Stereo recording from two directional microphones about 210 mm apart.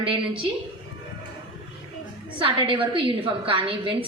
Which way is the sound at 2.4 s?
25° right (ahead or behind).